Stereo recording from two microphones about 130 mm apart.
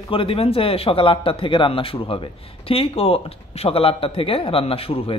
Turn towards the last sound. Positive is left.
turn(degrees=45)  # may be behind; listen again after turning